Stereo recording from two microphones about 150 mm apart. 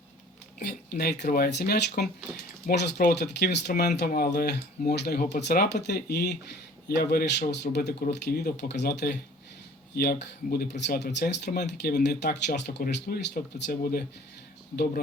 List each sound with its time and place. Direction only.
0.6 s speech: 90° left
1.2 s speech: 80° left
13.3 s speech: 70° left (ahead or behind)